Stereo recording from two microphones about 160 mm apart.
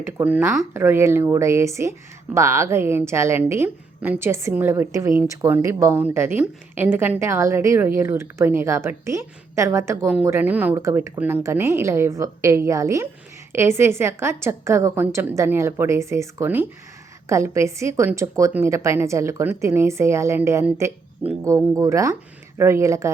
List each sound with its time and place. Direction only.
0.0 s a woman's voice: 10° right (ahead or behind)